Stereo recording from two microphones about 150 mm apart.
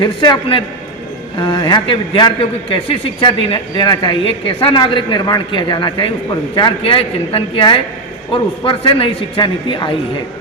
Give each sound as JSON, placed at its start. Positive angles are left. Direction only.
{"t": 0.0, "sound": "a man's voice", "side_deg": 30}